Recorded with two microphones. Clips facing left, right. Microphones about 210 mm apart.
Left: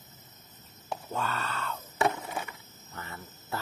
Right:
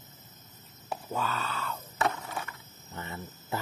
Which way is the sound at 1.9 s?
15° left (ahead or behind).